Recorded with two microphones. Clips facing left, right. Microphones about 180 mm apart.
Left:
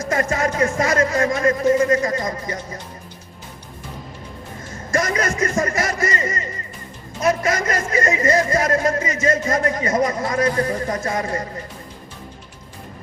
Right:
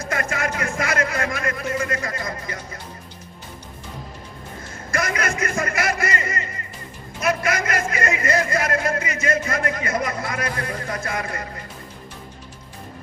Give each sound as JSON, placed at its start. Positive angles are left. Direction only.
{"t": 0.0, "sound": "a man's voice", "side_deg": 35}
{"t": 4.9, "sound": "a man's voice", "side_deg": 40}